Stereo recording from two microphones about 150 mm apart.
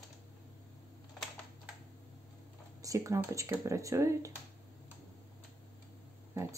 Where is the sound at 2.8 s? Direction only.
20° right (ahead or behind).